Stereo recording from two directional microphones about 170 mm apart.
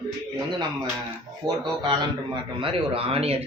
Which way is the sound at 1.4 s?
25° right (ahead or behind).